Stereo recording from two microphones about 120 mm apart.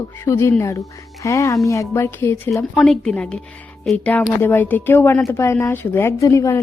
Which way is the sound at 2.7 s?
5° left (ahead or behind).